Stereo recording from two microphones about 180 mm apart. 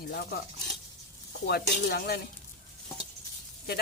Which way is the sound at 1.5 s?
60° left (ahead or behind).